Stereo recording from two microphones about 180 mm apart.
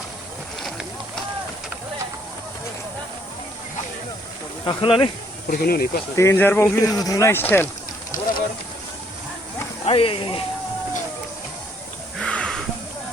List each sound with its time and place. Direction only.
0.6 s a sound: centre (ahead or behind)
4.6 s speech: 30° left (ahead or behind)
5.5 s speech: 55° left (ahead or behind)
6.1 s speech: 15° left (ahead or behind)
9.8 s speech: 30° left (ahead or behind)
12.2 s a sound: 5° left (ahead or behind)